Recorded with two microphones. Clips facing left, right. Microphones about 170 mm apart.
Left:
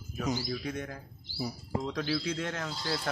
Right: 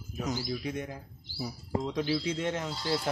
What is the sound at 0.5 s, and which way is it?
Speech, 15° right (ahead or behind).